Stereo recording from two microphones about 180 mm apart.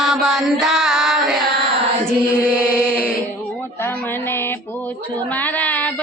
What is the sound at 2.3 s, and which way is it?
Chant, 10° right (ahead or behind).